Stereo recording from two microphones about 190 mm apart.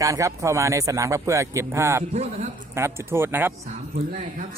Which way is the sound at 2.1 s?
35° right (ahead or behind).